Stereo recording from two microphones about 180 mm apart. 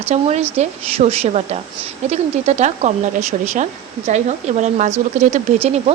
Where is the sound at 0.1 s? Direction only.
40° right (ahead or behind).